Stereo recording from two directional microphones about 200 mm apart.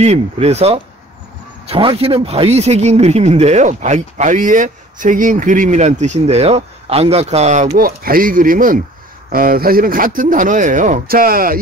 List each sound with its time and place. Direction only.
0.0 s a man's voice: 35° right (ahead or behind)